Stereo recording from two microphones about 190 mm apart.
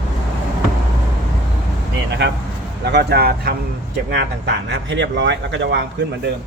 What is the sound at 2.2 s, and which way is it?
Speech, 65° right (ahead or behind).